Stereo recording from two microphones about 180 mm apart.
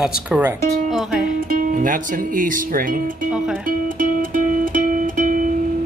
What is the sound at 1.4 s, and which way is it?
Speech, 50° right (ahead or behind).